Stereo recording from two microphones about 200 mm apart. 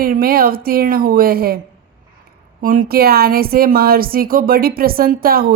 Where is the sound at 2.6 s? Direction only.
45° right (ahead or behind).